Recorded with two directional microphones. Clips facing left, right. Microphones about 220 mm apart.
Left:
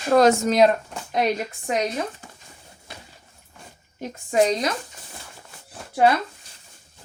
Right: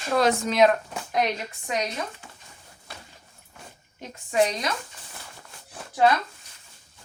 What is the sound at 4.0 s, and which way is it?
Speech, 40° left (ahead or behind).